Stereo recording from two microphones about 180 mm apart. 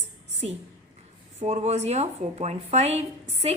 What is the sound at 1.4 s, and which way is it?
A woman's voice, 35° right (ahead or behind).